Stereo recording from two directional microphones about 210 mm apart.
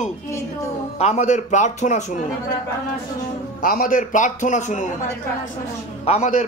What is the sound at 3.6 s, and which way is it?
A man's voice, 40° left (ahead or behind).